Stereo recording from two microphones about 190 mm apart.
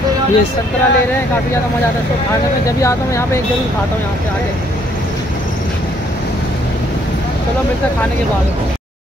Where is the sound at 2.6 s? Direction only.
15° left (ahead or behind).